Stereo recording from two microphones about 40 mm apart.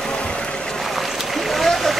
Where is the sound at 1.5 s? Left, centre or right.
Centre.